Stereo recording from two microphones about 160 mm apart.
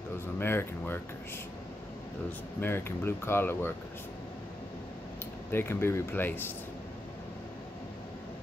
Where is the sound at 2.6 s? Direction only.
15° left (ahead or behind).